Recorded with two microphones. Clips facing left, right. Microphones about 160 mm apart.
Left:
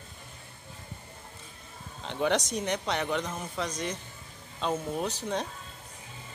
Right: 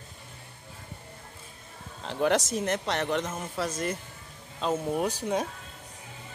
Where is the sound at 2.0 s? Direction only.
Centre (ahead or behind).